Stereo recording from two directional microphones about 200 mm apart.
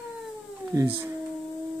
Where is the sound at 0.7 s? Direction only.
15° right (ahead or behind).